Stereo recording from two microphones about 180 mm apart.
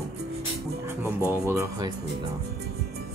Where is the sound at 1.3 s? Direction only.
15° right (ahead or behind).